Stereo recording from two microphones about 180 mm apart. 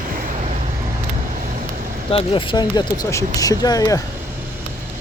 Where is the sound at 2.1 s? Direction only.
30° left (ahead or behind).